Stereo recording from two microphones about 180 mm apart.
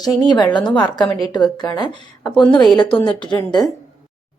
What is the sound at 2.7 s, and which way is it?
Speech, 25° left (ahead or behind).